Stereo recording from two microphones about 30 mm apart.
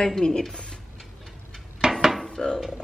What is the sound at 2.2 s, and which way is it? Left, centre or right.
Dishes, left.